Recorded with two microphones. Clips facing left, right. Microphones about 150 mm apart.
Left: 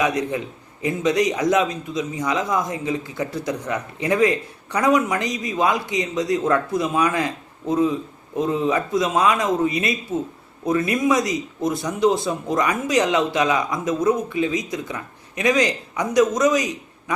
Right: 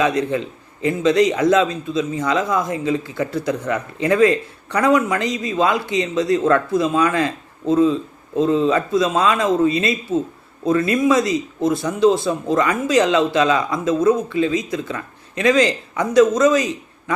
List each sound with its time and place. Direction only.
0.0 s a man's voice: 15° left (ahead or behind)